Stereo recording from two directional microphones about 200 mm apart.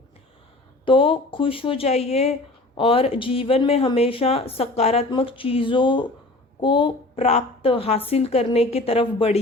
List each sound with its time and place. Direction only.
0.9 s speech: 25° left (ahead or behind)